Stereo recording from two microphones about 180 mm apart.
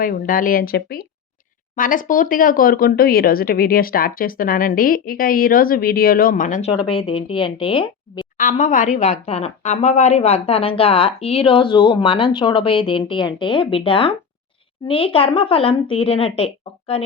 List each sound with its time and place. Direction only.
0.0 s speech: 50° left (ahead or behind)
6.8 s speech: 30° left (ahead or behind)
8.4 s a woman's voice: 45° left (ahead or behind)